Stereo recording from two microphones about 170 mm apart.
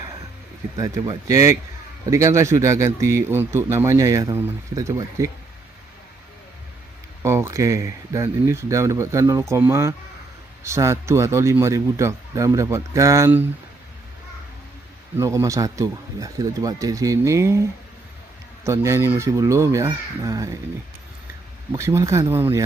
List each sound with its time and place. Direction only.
0.7 s a man's voice: 20° right (ahead or behind)
7.2 s a man's voice: 15° right (ahead or behind)
15.1 s speech: 15° right (ahead or behind)
18.7 s a man's voice: 15° right (ahead or behind)
21.7 s a man's voice: 15° right (ahead or behind)